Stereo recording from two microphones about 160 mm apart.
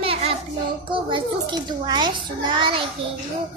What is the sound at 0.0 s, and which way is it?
Hands, 35° right (ahead or behind).